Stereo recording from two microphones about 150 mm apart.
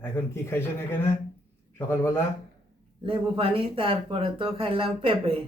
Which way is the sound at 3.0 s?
40° right (ahead or behind).